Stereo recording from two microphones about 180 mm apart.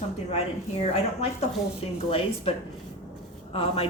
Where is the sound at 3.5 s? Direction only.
30° left (ahead or behind).